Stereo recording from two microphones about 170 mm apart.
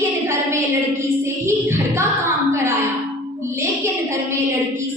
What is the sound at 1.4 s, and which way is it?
Music, 15° right (ahead or behind).